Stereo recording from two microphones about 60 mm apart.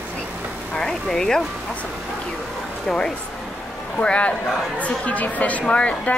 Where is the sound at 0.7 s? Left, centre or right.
Centre.